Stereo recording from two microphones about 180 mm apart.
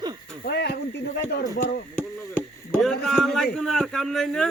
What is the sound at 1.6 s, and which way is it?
Speech, 55° left (ahead or behind).